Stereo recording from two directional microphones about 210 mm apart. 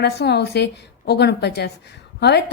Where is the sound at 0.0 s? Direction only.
55° left (ahead or behind).